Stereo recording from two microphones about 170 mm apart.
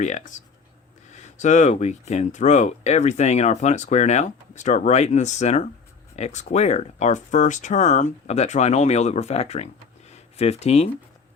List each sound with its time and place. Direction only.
0.0 s speech: 45° left (ahead or behind)